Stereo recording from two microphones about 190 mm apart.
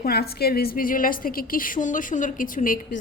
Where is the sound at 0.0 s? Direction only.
55° left (ahead or behind).